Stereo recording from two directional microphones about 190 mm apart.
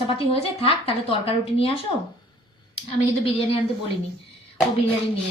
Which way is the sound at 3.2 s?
30° left (ahead or behind).